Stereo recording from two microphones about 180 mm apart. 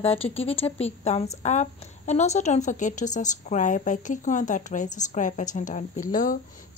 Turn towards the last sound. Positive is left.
turn(degrees=50)  # may be behind; listen again after turning